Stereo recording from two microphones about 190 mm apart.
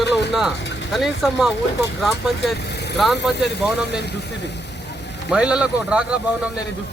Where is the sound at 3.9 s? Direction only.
60° left (ahead or behind).